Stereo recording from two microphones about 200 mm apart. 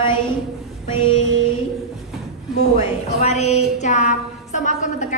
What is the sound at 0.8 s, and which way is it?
Music, 30° left (ahead or behind).